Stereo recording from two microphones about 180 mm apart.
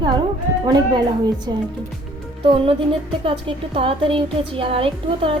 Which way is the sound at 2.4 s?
30° right (ahead or behind).